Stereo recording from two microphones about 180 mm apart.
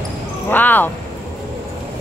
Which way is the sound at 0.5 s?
10° left (ahead or behind).